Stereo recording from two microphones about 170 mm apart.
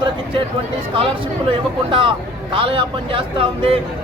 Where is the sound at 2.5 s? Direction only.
30° right (ahead or behind).